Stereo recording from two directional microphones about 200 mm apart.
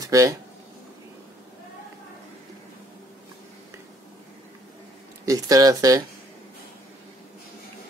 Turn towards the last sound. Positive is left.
turn(degrees=-20)  # may be behind; listen again after turning